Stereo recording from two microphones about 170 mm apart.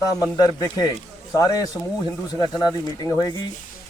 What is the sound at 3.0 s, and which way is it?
Speech, 20° left (ahead or behind).